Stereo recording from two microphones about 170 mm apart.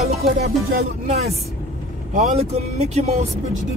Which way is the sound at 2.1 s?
45° right (ahead or behind).